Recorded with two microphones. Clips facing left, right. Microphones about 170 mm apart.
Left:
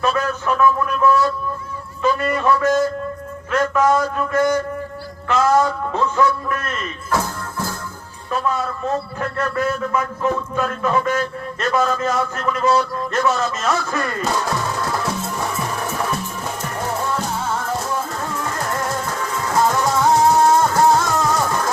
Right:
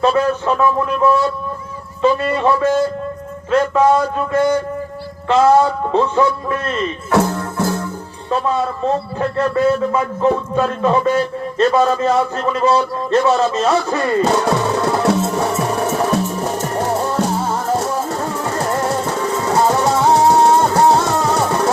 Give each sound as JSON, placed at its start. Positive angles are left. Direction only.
{"t": 0.0, "sound": "a man's voice", "side_deg": -30}
{"t": 7.1, "sound": "music", "side_deg": -70}
{"t": 8.3, "sound": "a man's voice", "side_deg": -30}
{"t": 14.4, "sound": "music", "side_deg": -70}
{"t": 15.7, "sound": "music", "side_deg": -40}